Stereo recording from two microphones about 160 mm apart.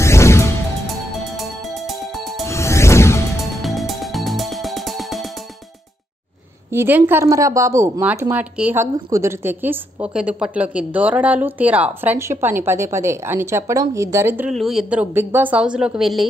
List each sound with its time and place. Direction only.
0.0 s music: 15° left (ahead or behind)
0.8 s music: centre (ahead or behind)
2.4 s music: 15° left (ahead or behind)
3.5 s music: centre (ahead or behind)
6.7 s speech: 15° right (ahead or behind)
14.5 s a woman's voice: centre (ahead or behind)